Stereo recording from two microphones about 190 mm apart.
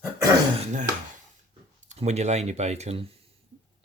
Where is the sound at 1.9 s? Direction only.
35° right (ahead or behind).